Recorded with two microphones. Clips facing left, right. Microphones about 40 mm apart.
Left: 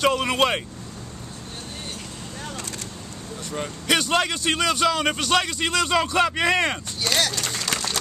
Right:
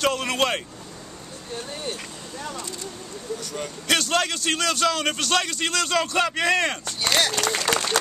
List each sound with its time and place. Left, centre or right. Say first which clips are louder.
0.0 s a man's voice: left 2 dB; centre
3.5 s a man's voice: left 2 dB; centre
7.0 s speech: right 2 dB; centre
7.6 s applause: right 4 dB; right